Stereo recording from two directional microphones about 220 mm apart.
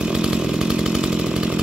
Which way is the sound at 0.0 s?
5° right (ahead or behind).